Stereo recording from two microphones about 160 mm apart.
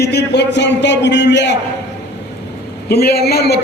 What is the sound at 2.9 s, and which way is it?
Speech, 80° left.